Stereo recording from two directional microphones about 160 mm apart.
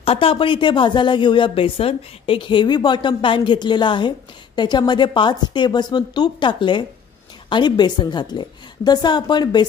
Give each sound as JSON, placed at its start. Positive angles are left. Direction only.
{"t": 0.0, "sound": "a woman's voice", "side_deg": 35}